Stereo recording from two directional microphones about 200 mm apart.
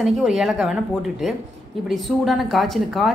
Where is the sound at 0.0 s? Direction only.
Centre (ahead or behind).